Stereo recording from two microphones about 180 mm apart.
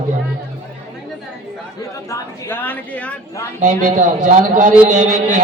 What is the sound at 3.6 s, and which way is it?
A man's voice, 45° right (ahead or behind).